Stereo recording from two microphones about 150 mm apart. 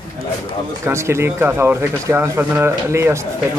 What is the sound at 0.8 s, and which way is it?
Speech, 20° right (ahead or behind).